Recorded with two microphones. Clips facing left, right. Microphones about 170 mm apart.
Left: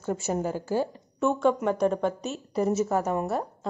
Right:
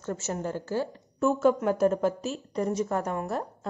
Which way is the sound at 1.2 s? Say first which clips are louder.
Even; 5° right (ahead or behind).